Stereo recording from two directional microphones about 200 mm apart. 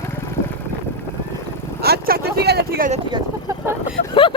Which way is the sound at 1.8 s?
50° right (ahead or behind).